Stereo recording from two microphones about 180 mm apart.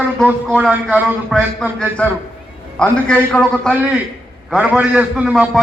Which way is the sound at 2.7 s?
5° left (ahead or behind).